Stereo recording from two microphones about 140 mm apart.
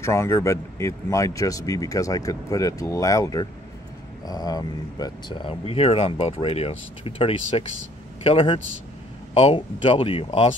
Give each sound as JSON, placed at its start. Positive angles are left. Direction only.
{"t": 0.0, "sound": "a man's voice", "side_deg": 20}